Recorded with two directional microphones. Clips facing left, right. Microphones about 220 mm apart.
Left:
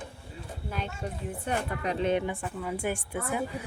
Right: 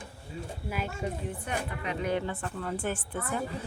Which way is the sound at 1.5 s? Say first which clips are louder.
Left 5 dB; 40° left (ahead or behind).